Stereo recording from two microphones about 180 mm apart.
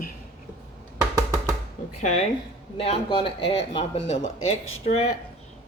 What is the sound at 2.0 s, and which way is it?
Speech, 40° left (ahead or behind).